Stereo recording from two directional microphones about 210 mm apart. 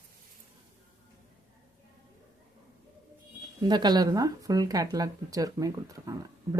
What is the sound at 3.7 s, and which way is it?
Speech, 20° right (ahead or behind).